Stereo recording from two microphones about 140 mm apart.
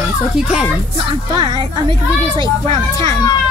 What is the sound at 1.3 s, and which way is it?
A child's voice, 30° right (ahead or behind).